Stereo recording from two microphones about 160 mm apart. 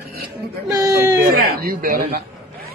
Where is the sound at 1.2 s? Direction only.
65° right (ahead or behind).